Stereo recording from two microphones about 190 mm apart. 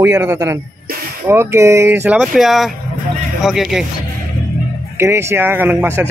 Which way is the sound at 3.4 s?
Centre (ahead or behind).